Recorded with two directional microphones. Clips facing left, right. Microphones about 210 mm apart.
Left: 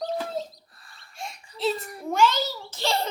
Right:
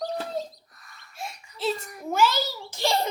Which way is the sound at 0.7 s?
30° left (ahead or behind).